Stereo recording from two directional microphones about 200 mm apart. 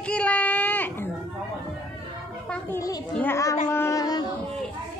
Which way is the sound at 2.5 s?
15° left (ahead or behind).